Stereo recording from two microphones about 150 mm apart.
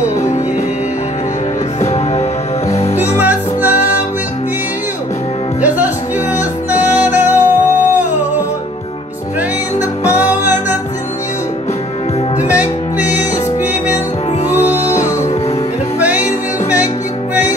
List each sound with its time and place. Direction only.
1.8 s music: 45° left (ahead or behind)
3.2 s music: 10° right (ahead or behind)
6.7 s music: 10° right (ahead or behind)
10.4 s music: 10° right (ahead or behind)